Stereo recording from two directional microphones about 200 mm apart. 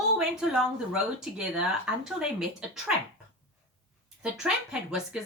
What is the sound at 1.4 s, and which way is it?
Speech, 5° right (ahead or behind).